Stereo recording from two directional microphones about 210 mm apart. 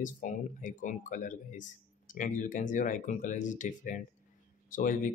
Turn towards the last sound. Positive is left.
turn(degrees=40)  # may be behind; listen again after turning